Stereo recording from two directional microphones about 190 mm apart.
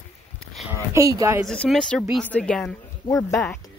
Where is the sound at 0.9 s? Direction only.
15° right (ahead or behind).